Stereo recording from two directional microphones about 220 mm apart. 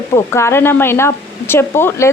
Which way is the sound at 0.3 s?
10° left (ahead or behind).